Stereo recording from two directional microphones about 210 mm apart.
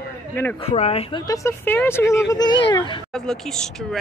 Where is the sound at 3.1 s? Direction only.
Centre (ahead or behind).